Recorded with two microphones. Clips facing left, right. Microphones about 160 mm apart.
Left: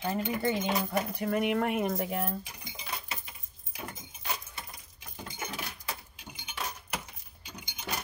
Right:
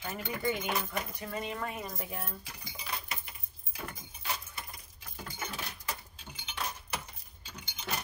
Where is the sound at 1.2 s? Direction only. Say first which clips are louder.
Left 12 dB; 65° left (ahead or behind).